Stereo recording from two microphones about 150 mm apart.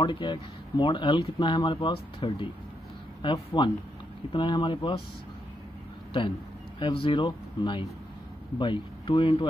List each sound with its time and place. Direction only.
0.0 s speech: 30° left (ahead or behind)
6.8 s speech: 35° left (ahead or behind)